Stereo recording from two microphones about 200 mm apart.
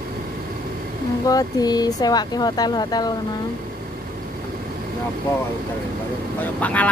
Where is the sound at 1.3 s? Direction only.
20° left (ahead or behind).